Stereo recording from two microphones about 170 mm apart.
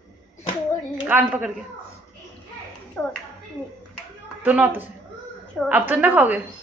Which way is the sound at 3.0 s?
10° left (ahead or behind).